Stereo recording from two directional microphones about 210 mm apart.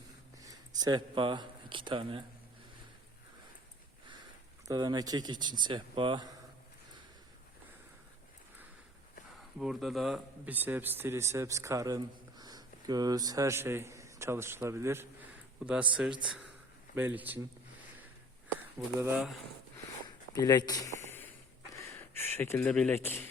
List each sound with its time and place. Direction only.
0.8 s speech: 20° right (ahead or behind)
4.7 s speech: 20° right (ahead or behind)
9.6 s speech: centre (ahead or behind)
18.9 s speech: 10° right (ahead or behind)
20.1 s a sound: 15° left (ahead or behind)
21.8 s speech: 10° left (ahead or behind)